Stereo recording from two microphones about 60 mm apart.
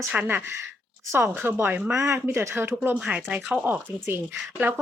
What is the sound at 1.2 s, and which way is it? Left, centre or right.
Speech, right.